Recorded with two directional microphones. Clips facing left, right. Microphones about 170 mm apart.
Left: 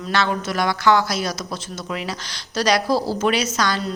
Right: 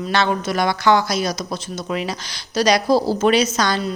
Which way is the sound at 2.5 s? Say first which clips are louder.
Right 3 dB; 15° right (ahead or behind).